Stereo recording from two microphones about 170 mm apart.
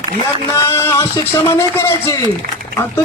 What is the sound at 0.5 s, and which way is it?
A man's voice, 15° left (ahead or behind).